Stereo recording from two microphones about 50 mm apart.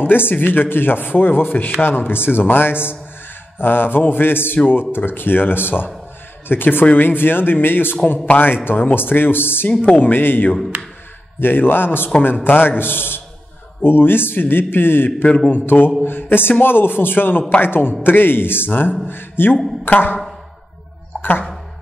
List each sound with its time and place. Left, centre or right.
0.0 s speech: left
9.7 s a man's voice: left
9.9 s a man's voice: left
15.2 s a man's voice: left
15.5 s a man's voice: left
21.2 s a sound: left